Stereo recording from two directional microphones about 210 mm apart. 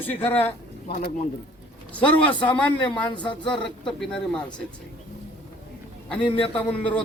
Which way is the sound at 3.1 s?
20° left (ahead or behind).